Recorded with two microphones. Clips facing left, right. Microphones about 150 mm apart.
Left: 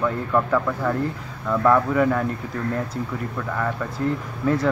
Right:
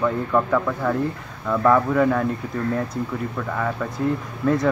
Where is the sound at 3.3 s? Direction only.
5° right (ahead or behind).